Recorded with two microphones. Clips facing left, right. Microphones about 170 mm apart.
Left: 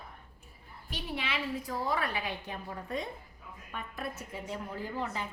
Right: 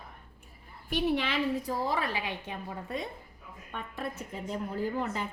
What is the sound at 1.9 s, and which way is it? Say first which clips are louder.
Speech: right 1 dB; 25° right (ahead or behind).